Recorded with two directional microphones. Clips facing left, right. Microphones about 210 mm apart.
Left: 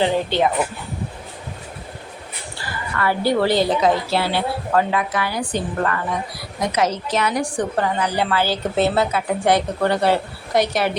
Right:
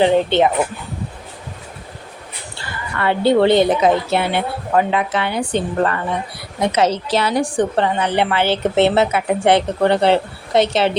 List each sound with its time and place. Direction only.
0.0 s a woman's voice: 20° right (ahead or behind)
3.0 s a woman's voice: 25° right (ahead or behind)